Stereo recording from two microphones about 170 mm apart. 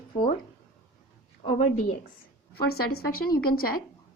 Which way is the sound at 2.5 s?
65° left (ahead or behind).